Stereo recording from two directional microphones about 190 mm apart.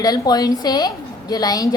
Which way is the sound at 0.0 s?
20° left (ahead or behind).